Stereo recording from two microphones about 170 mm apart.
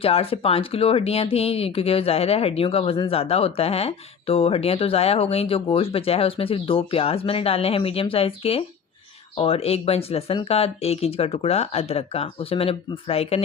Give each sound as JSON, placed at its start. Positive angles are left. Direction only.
{"t": 0.0, "sound": "speech", "side_deg": 35}